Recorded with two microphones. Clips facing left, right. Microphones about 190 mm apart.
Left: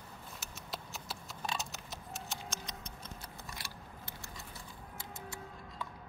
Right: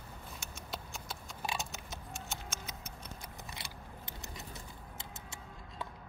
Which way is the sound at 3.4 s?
20° right (ahead or behind).